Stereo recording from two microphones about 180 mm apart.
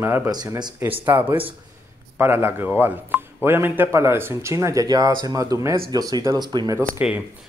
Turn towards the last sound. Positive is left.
turn(degrees=-15)  # may be behind; listen again after turning